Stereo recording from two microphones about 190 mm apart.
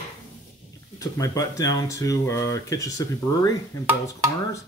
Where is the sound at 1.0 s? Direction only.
15° left (ahead or behind).